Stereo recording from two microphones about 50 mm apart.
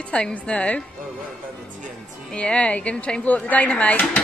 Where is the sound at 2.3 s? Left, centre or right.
Left.